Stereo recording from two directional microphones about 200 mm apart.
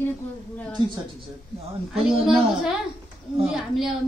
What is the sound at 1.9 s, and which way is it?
A woman's voice, centre (ahead or behind).